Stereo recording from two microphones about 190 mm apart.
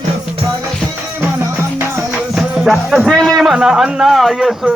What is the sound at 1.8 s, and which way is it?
Speech, 10° right (ahead or behind).